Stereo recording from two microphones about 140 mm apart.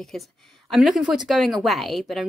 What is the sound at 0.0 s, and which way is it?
A woman's voice, centre (ahead or behind).